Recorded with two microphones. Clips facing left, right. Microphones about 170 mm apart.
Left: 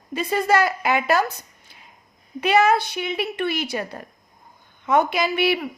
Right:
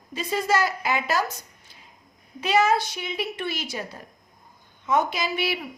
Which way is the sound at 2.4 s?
60° left (ahead or behind).